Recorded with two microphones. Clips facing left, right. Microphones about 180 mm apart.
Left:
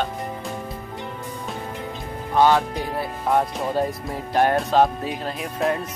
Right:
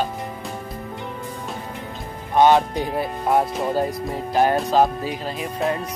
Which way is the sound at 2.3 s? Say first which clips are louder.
Right 2 dB; 20° right (ahead or behind).